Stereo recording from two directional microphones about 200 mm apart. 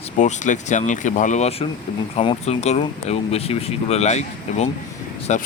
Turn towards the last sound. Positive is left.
turn(degrees=35)  # may be behind; listen again after turning